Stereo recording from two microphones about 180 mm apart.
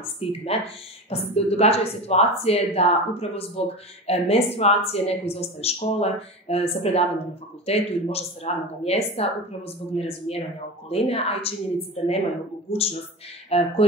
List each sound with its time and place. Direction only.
0.2 s speech: 35° left (ahead or behind)
13.5 s speech: 35° left (ahead or behind)